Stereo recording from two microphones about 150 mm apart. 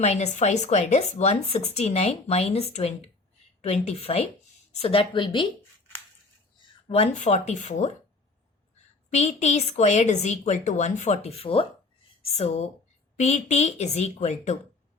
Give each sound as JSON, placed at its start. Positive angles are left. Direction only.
{"t": 0.0, "sound": "a woman's voice", "side_deg": 50}
{"t": 6.8, "sound": "a woman's voice", "side_deg": 40}
{"t": 9.0, "sound": "a woman's voice", "side_deg": 50}